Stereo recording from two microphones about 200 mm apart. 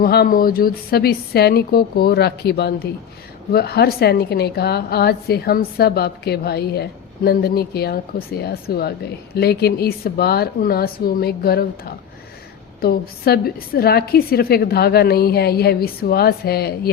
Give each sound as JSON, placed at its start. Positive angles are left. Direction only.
{"t": 0.0, "sound": "a woman's voice", "side_deg": 50}
{"t": 12.8, "sound": "a woman's voice", "side_deg": 50}